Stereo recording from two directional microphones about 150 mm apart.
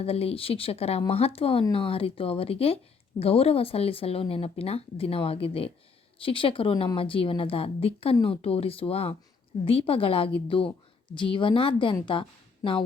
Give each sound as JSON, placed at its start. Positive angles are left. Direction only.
{"t": 0.0, "sound": "speech", "side_deg": 40}